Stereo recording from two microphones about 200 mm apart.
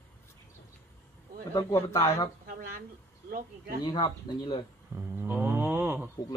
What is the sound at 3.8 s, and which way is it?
Speech, 20° left (ahead or behind).